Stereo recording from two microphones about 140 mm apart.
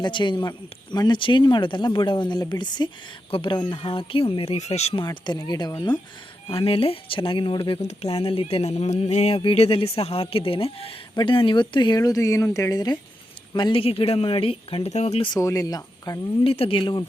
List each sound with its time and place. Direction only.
0.0 s speech: 35° left (ahead or behind); by 5.0 s 50° left (ahead or behind)
5.0 s speech: 30° left (ahead or behind)
6.5 s speech: 40° left (ahead or behind)
15.3 s speech: 25° left (ahead or behind)
16.4 s speech: 40° left (ahead or behind)